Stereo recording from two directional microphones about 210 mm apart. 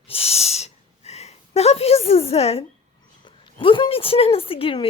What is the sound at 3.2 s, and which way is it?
Speech, 25° left (ahead or behind).